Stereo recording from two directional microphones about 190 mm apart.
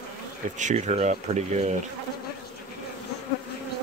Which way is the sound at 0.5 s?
40° right (ahead or behind).